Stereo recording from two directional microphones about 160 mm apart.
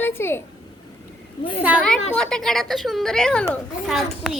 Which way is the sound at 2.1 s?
5° left (ahead or behind).